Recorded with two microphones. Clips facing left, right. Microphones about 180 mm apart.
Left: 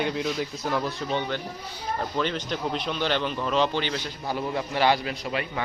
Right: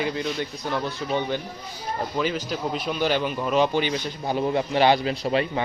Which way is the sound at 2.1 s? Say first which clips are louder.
Right 3 dB; 5° right (ahead or behind).